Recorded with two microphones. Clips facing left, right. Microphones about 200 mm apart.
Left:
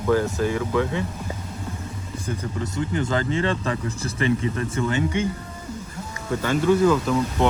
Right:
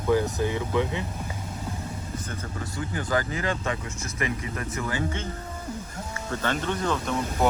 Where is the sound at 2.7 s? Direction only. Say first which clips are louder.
Left 3 dB; 25° left (ahead or behind).